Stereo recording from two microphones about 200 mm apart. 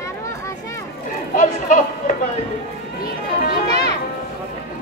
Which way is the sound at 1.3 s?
40° left (ahead or behind).